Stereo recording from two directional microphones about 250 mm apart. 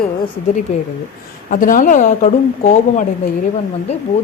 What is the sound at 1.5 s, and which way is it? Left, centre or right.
A woman's voice, left.